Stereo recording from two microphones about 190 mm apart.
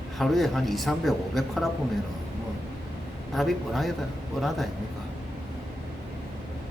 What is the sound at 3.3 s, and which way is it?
Speech, centre (ahead or behind).